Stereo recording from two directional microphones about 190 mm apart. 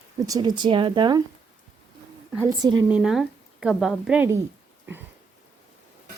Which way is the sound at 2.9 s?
5° right (ahead or behind).